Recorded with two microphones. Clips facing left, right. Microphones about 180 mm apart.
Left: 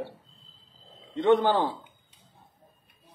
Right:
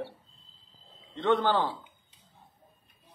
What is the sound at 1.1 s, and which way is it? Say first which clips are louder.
Speech: left 4 dB; 15° left (ahead or behind).